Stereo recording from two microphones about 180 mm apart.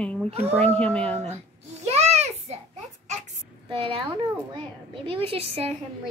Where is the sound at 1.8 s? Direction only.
35° right (ahead or behind).